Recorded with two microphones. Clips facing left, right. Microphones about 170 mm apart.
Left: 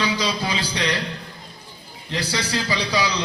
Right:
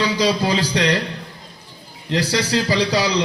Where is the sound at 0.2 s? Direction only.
40° right (ahead or behind).